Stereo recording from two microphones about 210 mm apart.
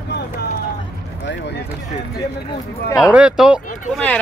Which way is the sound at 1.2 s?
50° left (ahead or behind).